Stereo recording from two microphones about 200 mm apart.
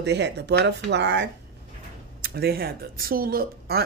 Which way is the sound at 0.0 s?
60° right (ahead or behind).